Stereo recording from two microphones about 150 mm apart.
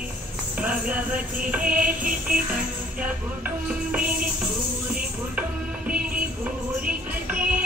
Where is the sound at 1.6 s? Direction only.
70° right (ahead or behind).